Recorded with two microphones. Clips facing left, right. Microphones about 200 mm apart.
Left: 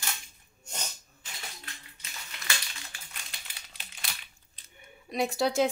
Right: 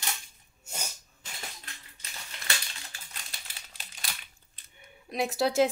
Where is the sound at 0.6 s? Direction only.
10° right (ahead or behind).